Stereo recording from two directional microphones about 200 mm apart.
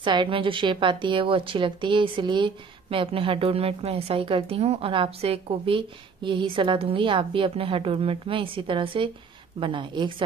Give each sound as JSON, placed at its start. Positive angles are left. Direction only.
{"t": 0.0, "sound": "a woman's voice", "side_deg": -25}